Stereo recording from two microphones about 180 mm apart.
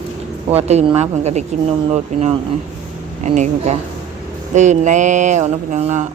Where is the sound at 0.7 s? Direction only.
35° right (ahead or behind).